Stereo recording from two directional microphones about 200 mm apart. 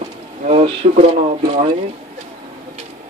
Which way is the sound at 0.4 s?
35° right (ahead or behind).